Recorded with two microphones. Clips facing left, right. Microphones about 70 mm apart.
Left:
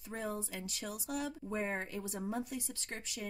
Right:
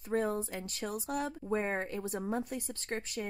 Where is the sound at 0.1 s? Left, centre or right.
Right.